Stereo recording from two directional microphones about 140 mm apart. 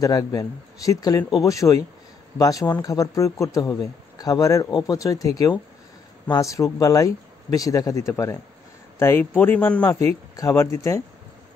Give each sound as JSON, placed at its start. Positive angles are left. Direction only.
{"t": 0.0, "sound": "a man's voice", "side_deg": 25}
{"t": 10.3, "sound": "a man's voice", "side_deg": 20}